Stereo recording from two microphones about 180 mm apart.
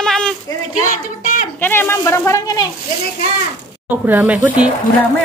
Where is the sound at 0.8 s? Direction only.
45° left (ahead or behind).